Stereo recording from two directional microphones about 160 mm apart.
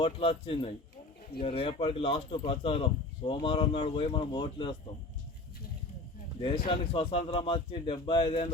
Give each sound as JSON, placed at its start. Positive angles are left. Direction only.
{"t": 0.0, "sound": "speech", "side_deg": 35}
{"t": 6.7, "sound": "speech", "side_deg": 35}